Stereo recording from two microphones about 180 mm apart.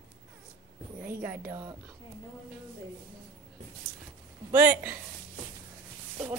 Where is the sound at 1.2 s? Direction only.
10° right (ahead or behind).